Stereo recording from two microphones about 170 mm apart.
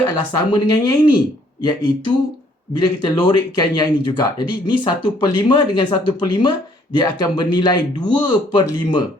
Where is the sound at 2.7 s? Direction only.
25° left (ahead or behind).